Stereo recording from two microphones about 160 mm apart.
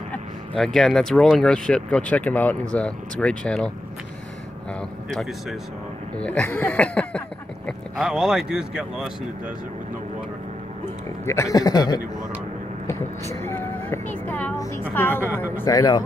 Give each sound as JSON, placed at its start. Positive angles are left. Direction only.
{"t": 0.1, "sound": "speech", "side_deg": 5}
{"t": 5.1, "sound": "speech", "side_deg": 0}
{"t": 11.2, "sound": "speech", "side_deg": 20}
{"t": 12.8, "sound": "vehicle", "side_deg": 15}
{"t": 14.2, "sound": "speech", "side_deg": 10}